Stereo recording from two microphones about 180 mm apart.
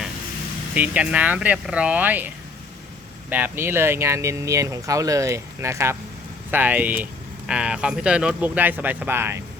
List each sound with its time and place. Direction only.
0.7 s speech: 5° right (ahead or behind)